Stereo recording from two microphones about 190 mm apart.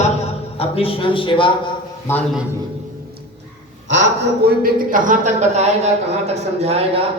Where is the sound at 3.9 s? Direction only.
65° right (ahead or behind).